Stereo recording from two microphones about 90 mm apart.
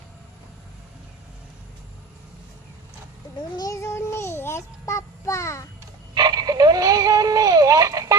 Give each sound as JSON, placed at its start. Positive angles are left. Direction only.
{"t": 3.5, "sound": "child singing", "side_deg": 45}
{"t": 3.8, "sound": "child singing", "side_deg": 30}
{"t": 6.1, "sound": "synthetic singing", "side_deg": -50}